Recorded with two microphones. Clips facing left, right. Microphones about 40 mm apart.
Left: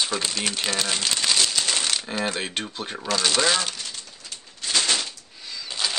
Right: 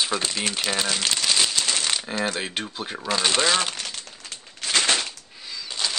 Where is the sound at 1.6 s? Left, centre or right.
Centre.